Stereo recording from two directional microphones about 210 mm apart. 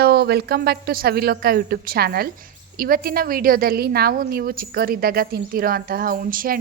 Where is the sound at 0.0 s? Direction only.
50° right (ahead or behind).